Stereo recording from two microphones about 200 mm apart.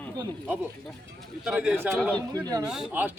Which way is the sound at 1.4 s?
5° right (ahead or behind).